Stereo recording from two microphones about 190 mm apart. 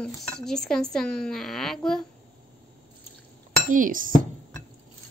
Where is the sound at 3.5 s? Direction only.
45° right (ahead or behind).